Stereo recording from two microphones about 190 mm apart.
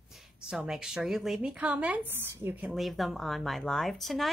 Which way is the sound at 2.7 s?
Centre (ahead or behind).